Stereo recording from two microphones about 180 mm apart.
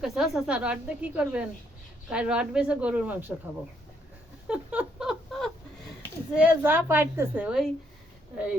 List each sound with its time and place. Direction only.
0.0 s a woman's voice: 5° right (ahead or behind)
4.4 s a sound: 5° right (ahead or behind)
6.3 s speech: 10° right (ahead or behind)